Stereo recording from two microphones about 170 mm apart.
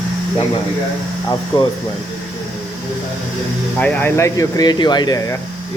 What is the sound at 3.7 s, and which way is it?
Speech, 10° left (ahead or behind).